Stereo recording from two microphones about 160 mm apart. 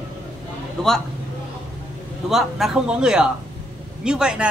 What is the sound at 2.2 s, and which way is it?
A man's voice, centre (ahead or behind).